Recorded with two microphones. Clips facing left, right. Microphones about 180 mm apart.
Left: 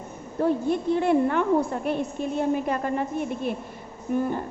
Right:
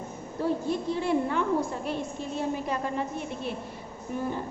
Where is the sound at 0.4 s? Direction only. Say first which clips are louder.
Left 5 dB; 55° left (ahead or behind).